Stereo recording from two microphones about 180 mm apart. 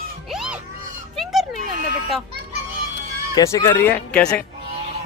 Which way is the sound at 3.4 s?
20° left (ahead or behind).